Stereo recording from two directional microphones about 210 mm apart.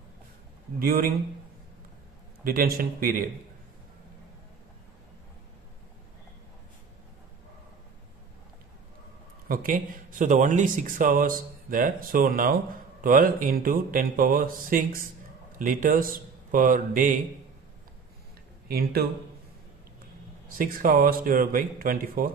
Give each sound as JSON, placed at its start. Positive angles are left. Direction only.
{"t": 0.7, "sound": "speech", "side_deg": -45}
{"t": 2.4, "sound": "speech", "side_deg": -45}
{"t": 9.5, "sound": "a man's voice", "side_deg": -40}
{"t": 18.7, "sound": "speech", "side_deg": -45}
{"t": 20.5, "sound": "speech", "side_deg": -45}